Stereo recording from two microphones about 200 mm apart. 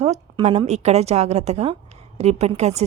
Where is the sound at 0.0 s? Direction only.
35° right (ahead or behind).